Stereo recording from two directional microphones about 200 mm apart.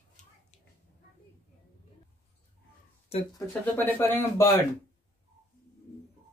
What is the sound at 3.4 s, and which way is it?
Speech, 10° left (ahead or behind).